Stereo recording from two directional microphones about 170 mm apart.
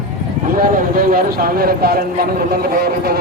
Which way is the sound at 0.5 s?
55° right (ahead or behind).